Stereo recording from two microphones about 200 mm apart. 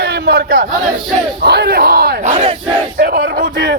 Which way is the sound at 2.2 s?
35° right (ahead or behind).